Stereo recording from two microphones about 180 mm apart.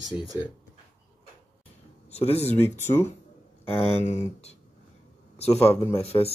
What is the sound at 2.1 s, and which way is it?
Speech, 35° left (ahead or behind).